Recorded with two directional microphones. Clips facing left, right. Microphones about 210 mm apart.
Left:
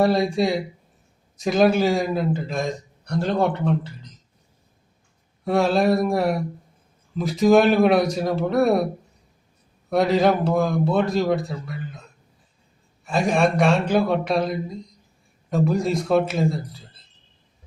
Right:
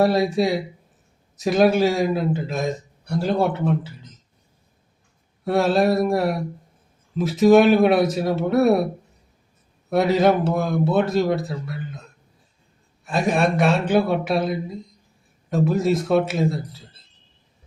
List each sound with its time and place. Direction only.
0.0 s a man's voice: centre (ahead or behind)
5.5 s a man's voice: centre (ahead or behind)
9.9 s a man's voice: centre (ahead or behind)
13.1 s a man's voice: centre (ahead or behind)